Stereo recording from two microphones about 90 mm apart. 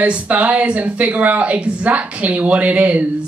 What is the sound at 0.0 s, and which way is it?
Speech, 15° right (ahead or behind).